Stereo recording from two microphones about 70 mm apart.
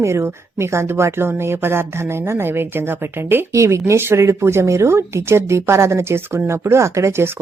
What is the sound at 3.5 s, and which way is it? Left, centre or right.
Speech, right.